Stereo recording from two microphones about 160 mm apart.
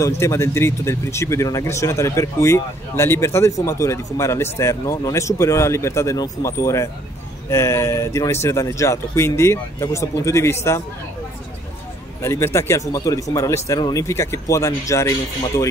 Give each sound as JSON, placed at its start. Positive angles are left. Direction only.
{"t": 0.0, "sound": "speech", "side_deg": 20}
{"t": 12.2, "sound": "speech", "side_deg": 15}